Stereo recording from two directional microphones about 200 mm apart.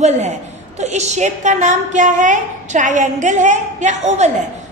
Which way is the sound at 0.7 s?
35° right (ahead or behind).